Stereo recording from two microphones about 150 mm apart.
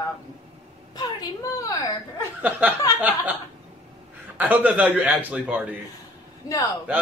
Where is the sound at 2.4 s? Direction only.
10° right (ahead or behind).